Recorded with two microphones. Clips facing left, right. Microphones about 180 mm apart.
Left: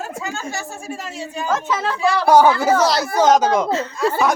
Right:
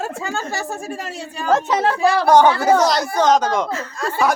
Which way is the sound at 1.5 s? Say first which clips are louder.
Right 5 dB; 35° right (ahead or behind).